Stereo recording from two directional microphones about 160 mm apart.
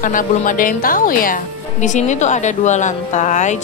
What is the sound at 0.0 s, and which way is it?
A woman's voice, 55° left (ahead or behind).